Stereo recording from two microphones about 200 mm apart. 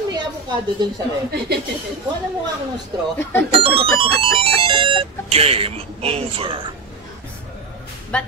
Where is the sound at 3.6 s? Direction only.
30° right (ahead or behind).